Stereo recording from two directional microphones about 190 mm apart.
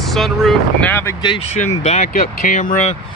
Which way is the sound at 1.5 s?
35° left (ahead or behind).